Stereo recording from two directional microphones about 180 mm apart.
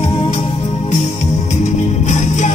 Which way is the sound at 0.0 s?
40° left (ahead or behind).